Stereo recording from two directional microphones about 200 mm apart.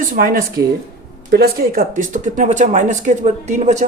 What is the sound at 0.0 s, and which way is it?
Speech, 45° right (ahead or behind).